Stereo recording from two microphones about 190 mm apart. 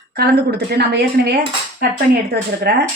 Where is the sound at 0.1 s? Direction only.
55° right (ahead or behind).